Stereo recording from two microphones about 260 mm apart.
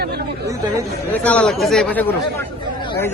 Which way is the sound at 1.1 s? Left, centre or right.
Centre.